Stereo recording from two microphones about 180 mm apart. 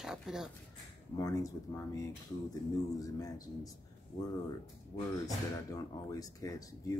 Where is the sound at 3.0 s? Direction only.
20° left (ahead or behind).